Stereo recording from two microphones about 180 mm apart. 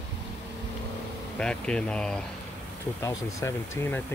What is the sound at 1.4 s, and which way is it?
Speech, 5° left (ahead or behind).